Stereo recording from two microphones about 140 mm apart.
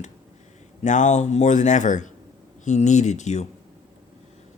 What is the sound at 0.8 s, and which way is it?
Speech, 60° left (ahead or behind).